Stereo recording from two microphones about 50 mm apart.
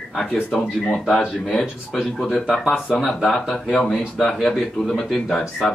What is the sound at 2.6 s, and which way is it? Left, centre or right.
Speech, left.